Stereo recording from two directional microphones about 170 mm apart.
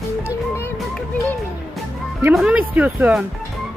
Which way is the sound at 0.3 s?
15° left (ahead or behind).